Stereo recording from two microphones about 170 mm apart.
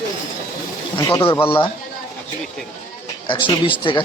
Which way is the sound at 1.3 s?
15° left (ahead or behind).